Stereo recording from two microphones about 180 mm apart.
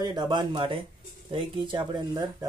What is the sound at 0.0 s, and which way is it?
Speech, 25° right (ahead or behind).